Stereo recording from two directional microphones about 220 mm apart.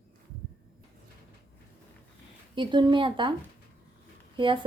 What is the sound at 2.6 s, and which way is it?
Speech, 20° right (ahead or behind).